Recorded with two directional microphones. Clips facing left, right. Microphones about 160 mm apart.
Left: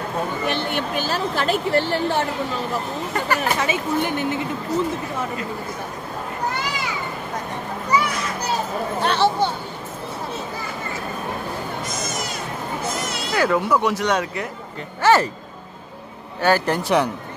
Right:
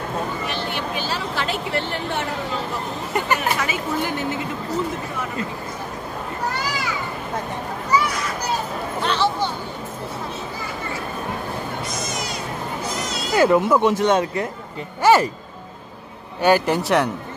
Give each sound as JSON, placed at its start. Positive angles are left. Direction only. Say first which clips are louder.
{"t": 0.5, "sound": "speech", "louder": "left 3 dB", "side_deg": 55}
{"t": 3.3, "sound": "speech", "louder": "left 2 dB", "side_deg": 25}
{"t": 9.0, "sound": "a sound", "louder": "left 2 dB", "side_deg": 50}
{"t": 13.3, "sound": "speech", "louder": "right 4 dB", "side_deg": -20}
{"t": 15.0, "sound": "speech", "louder": "right 1 dB", "side_deg": -10}
{"t": 16.3, "sound": "speech", "louder": "right 2 dB", "side_deg": -15}